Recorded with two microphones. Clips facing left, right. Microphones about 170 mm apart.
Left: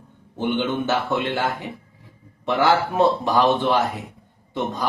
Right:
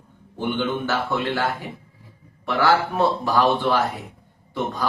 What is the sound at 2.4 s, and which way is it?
Speech, 20° left (ahead or behind).